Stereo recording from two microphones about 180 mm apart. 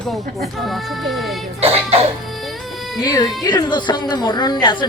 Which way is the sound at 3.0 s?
20° left (ahead or behind).